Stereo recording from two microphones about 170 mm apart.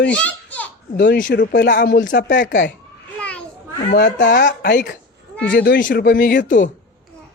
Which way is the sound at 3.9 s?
80° left.